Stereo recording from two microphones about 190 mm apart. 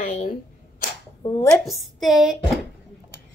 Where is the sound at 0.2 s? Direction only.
45° left (ahead or behind).